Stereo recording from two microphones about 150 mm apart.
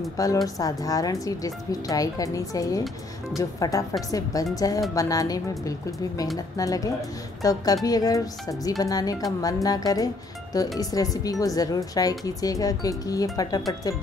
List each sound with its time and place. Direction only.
0.2 s a woman's voice: 25° left (ahead or behind)